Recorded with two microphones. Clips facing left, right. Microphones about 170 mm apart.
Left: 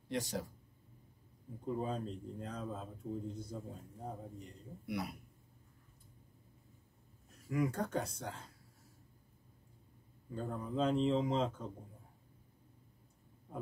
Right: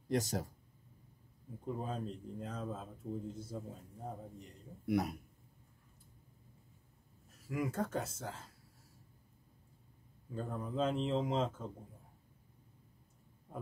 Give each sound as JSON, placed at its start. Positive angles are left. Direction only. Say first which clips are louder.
{"t": 0.1, "sound": "speech", "louder": "right 3 dB", "side_deg": -40}
{"t": 1.7, "sound": "a man's voice", "louder": "left 2 dB", "side_deg": 0}
{"t": 4.8, "sound": "speech", "louder": "right 7 dB", "side_deg": -45}
{"t": 7.2, "sound": "speech", "louder": "left 3 dB", "side_deg": 0}
{"t": 10.3, "sound": "a man's voice", "louder": "even", "side_deg": 0}
{"t": 13.5, "sound": "a sound", "louder": "left 2 dB", "side_deg": -10}